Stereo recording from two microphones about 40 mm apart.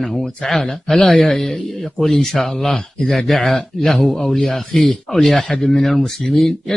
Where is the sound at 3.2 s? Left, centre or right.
Centre.